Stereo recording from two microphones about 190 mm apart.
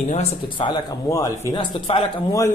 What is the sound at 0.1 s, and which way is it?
Speech, 35° left (ahead or behind).